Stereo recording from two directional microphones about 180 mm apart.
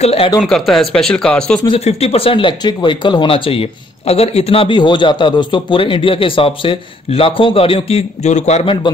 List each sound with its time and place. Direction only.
0.0 s speech: 35° left (ahead or behind)
0.4 s speech: centre (ahead or behind)
1.7 s speech: 35° left (ahead or behind)